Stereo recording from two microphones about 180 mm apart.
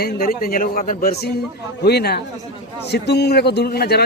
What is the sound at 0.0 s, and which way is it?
A man's voice, 55° left (ahead or behind).